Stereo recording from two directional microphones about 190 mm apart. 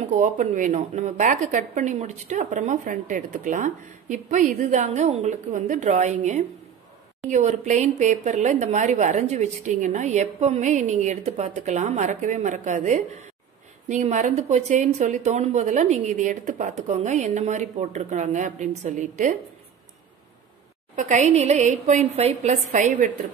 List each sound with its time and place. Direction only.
0.0 s a woman's voice: 40° right (ahead or behind)
20.9 s a woman's voice: 40° right (ahead or behind)